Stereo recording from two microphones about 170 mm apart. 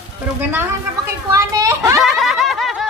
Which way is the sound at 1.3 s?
15° right (ahead or behind).